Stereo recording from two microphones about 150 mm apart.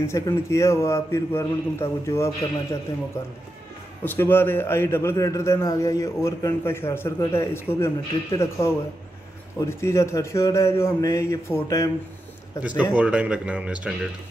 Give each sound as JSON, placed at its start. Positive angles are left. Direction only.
{"t": 0.0, "sound": "a man's voice", "side_deg": 20}
{"t": 4.0, "sound": "a man's voice", "side_deg": 15}
{"t": 12.9, "sound": "speech", "side_deg": -10}